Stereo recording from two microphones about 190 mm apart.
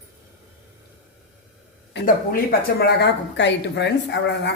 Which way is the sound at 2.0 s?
50° left (ahead or behind).